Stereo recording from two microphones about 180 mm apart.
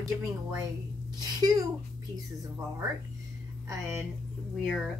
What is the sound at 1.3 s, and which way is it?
Speech, 20° right (ahead or behind).